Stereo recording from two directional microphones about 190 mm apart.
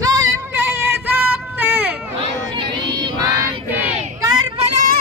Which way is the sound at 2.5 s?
25° right (ahead or behind).